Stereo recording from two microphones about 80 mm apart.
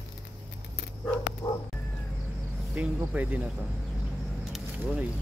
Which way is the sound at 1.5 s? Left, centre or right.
Left.